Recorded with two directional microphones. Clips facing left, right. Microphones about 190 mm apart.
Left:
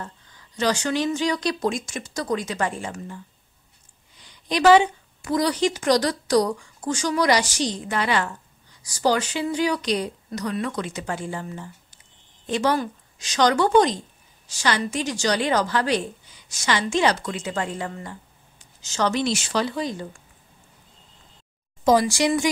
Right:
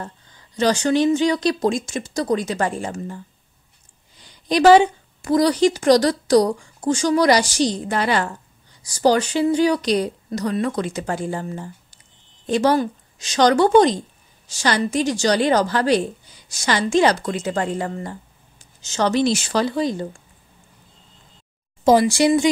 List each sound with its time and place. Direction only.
0.6 s speech: 30° right (ahead or behind)
4.5 s speech: 35° right (ahead or behind)
21.8 s speech: 30° right (ahead or behind)